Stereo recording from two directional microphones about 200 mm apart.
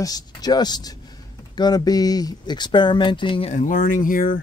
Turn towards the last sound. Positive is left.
turn(degrees=45)  # may be behind; listen again after turning